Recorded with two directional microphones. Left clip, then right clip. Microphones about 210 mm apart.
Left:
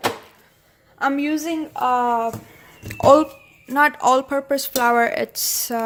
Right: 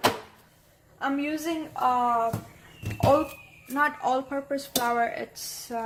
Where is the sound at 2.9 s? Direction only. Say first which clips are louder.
Left 9 dB; 55° left (ahead or behind).